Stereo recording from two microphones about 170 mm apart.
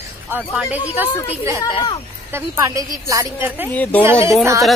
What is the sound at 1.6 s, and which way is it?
Speech, 30° left (ahead or behind).